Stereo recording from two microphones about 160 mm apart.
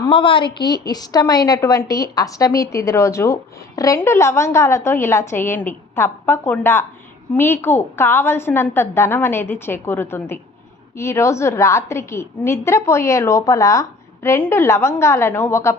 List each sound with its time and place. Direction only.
0.0 s a woman's voice: 30° left (ahead or behind); by 15.7 s 15° left (ahead or behind)